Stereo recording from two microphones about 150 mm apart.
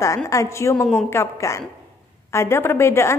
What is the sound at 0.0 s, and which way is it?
A woman's voice, 20° left (ahead or behind).